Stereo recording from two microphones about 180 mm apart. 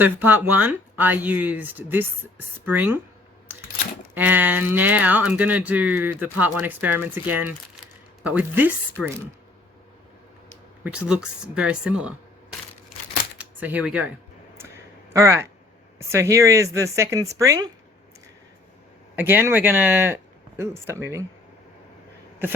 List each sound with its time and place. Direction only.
0.0 s speech: 10° right (ahead or behind)
4.1 s speech: 10° right (ahead or behind)
10.8 s speech: 5° right (ahead or behind)
15.1 s speech: 15° right (ahead or behind)
19.1 s speech: 10° right (ahead or behind)